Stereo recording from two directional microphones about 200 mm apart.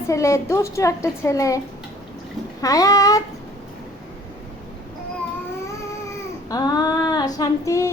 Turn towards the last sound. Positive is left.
turn(degrees=15)  # may be behind; listen again after turning